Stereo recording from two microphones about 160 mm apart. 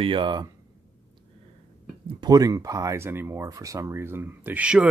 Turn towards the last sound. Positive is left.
turn(degrees=-10)  # may be behind; listen again after turning